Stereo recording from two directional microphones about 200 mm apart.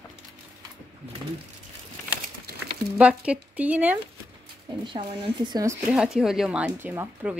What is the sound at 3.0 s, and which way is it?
Speech, 5° right (ahead or behind).